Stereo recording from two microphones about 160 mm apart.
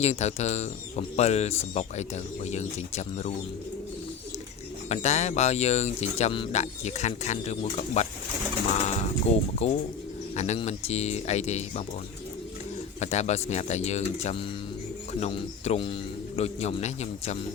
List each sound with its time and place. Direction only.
0.0 s speech: 45° left (ahead or behind)
4.9 s speech: 45° left (ahead or behind)
9.2 s speech: 40° left (ahead or behind)
13.0 s speech: 45° left (ahead or behind)